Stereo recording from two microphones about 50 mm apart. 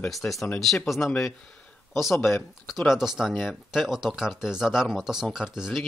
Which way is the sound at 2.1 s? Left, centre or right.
Left.